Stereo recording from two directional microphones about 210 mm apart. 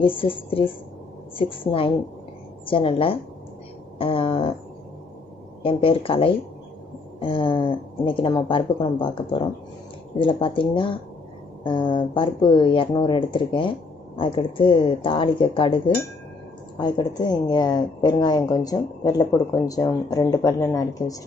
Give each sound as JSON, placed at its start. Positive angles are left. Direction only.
{"t": 0.0, "sound": "speech", "side_deg": 25}
{"t": 2.6, "sound": "speech", "side_deg": 25}
{"t": 5.6, "sound": "speech", "side_deg": 25}